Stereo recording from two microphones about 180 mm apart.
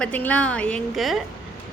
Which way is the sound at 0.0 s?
10° left (ahead or behind).